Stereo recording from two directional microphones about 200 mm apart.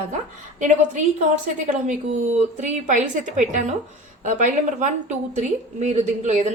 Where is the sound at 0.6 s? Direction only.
40° right (ahead or behind).